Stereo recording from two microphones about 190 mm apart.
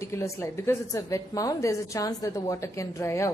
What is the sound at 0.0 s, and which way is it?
A woman's voice, 15° left (ahead or behind).